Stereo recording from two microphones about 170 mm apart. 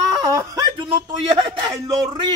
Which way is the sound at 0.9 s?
30° right (ahead or behind).